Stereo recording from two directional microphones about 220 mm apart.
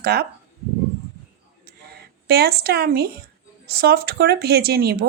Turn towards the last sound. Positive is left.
turn(degrees=-45)  # may be behind; listen again after turning